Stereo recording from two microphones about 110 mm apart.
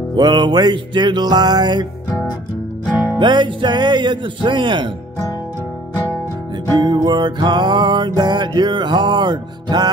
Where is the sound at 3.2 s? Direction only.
45° right (ahead or behind).